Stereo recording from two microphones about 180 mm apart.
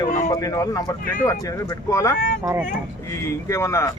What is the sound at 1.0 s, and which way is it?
Speech, 50° left (ahead or behind).